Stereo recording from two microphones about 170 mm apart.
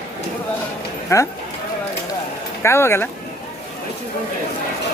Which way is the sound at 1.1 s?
20° left (ahead or behind).